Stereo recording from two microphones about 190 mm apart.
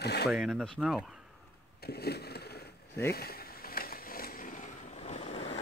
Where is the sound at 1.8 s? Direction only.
55° left (ahead or behind); by 5.6 s 35° left (ahead or behind).